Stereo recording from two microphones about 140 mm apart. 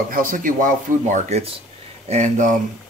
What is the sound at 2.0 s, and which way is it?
Speech, 55° right (ahead or behind).